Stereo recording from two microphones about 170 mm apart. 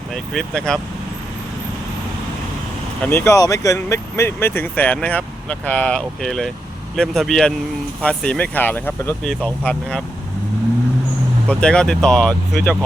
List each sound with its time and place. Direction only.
0.1 s speech: 5° left (ahead or behind)
3.0 s speech: 15° left (ahead or behind)
11.4 s speech: 5° left (ahead or behind)